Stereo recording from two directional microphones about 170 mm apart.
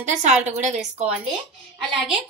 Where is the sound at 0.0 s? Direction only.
45° right (ahead or behind).